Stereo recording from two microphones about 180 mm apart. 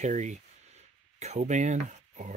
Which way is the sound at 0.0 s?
40° right (ahead or behind).